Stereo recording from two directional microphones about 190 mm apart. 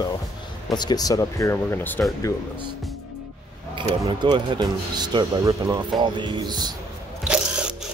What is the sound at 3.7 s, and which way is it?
Speech, 30° right (ahead or behind).